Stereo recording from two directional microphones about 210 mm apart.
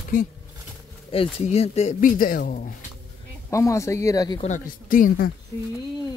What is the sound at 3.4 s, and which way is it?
Speech, 15° left (ahead or behind).